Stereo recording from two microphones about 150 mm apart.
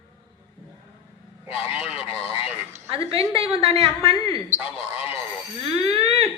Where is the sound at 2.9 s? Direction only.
40° right (ahead or behind).